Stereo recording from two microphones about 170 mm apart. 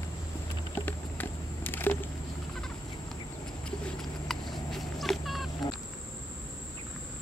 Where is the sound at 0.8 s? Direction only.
10° left (ahead or behind).